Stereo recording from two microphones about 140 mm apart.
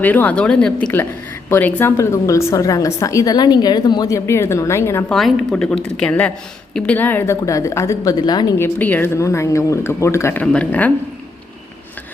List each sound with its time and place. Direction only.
0.0 s a woman's voice: 10° left (ahead or behind)
5.0 s a woman's voice: centre (ahead or behind); by 8.5 s 30° left (ahead or behind)
8.5 s a woman's voice: 15° left (ahead or behind)
10.4 s a woman's voice: 10° left (ahead or behind)